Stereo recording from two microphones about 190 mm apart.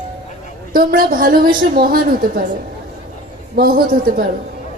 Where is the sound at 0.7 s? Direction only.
50° right (ahead or behind).